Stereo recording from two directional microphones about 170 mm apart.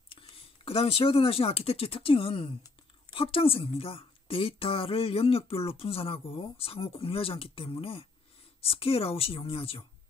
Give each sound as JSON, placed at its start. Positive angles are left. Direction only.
{"t": 0.1, "sound": "a woman's voice", "side_deg": 35}